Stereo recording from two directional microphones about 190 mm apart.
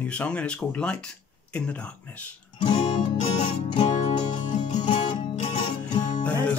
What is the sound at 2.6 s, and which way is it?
Music, 25° left (ahead or behind).